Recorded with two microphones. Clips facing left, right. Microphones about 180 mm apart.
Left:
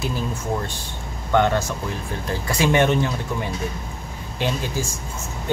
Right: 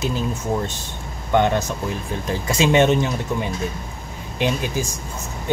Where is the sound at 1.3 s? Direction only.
15° right (ahead or behind).